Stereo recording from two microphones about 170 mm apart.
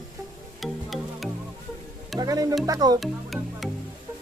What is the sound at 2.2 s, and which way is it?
Music, 20° right (ahead or behind).